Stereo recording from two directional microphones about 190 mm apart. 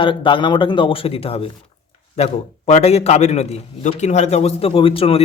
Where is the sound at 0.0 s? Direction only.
25° left (ahead or behind).